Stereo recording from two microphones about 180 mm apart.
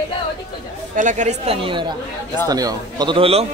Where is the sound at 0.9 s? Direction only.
45° right (ahead or behind).